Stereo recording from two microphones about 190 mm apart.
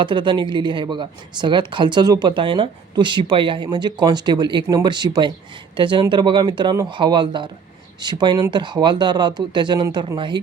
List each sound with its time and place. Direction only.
0.0 s speech: 25° right (ahead or behind)